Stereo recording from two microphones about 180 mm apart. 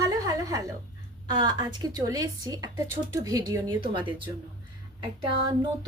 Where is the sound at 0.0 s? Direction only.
20° right (ahead or behind).